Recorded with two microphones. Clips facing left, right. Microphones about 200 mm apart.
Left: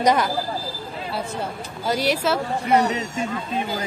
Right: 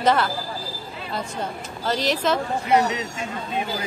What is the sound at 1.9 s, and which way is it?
Speech, 10° left (ahead or behind).